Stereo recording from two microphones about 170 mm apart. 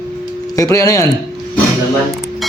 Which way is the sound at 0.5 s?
20° left (ahead or behind).